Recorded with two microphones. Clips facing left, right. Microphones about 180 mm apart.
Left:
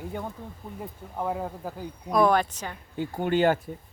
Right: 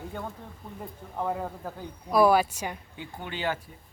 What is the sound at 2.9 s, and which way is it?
Speech, 45° left (ahead or behind).